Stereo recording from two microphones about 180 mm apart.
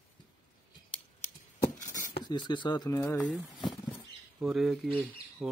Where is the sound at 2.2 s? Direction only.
25° left (ahead or behind).